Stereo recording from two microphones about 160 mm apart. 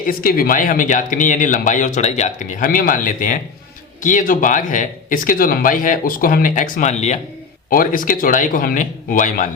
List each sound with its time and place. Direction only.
0.1 s speech: 65° left (ahead or behind); by 7.2 s 45° left (ahead or behind)
7.7 s speech: 60° left (ahead or behind)